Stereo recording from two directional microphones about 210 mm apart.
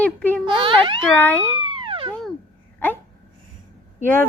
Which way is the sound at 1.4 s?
25° right (ahead or behind).